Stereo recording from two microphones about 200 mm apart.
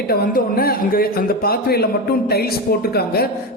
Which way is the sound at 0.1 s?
50° left (ahead or behind).